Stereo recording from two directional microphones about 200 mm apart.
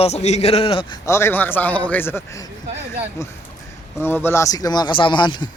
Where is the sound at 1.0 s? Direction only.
10° left (ahead or behind).